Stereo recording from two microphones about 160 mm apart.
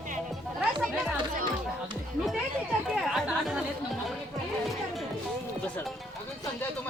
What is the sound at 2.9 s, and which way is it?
Chatter, 5° right (ahead or behind).